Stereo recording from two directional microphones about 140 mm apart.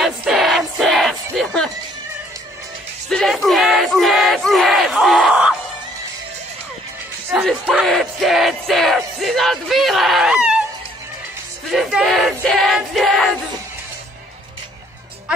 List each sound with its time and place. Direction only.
0.0 s music: centre (ahead or behind)
3.1 s battle cry: centre (ahead or behind)
7.6 s music: centre (ahead or behind)
11.7 s a sound: centre (ahead or behind)